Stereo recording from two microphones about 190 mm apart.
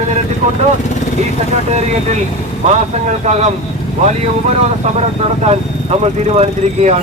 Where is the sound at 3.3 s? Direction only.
35° right (ahead or behind).